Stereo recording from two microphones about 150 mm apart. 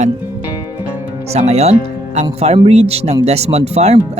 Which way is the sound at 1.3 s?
45° right (ahead or behind).